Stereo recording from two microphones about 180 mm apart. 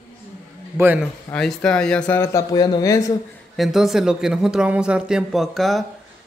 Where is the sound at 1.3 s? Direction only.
5° left (ahead or behind).